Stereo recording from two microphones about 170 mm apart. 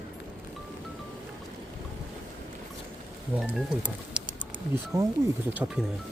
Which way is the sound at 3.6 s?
5° right (ahead or behind).